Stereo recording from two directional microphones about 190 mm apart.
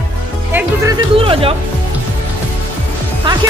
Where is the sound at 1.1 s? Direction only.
30° right (ahead or behind).